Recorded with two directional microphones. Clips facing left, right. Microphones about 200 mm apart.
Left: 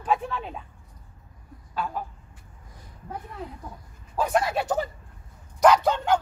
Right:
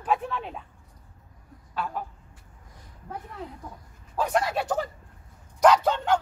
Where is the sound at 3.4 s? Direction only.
10° left (ahead or behind).